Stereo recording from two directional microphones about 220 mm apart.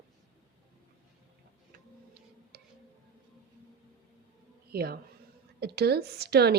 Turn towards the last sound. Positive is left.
turn(degrees=-45)  # may be behind; listen again after turning